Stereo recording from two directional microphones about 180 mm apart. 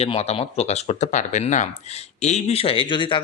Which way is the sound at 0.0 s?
35° left (ahead or behind).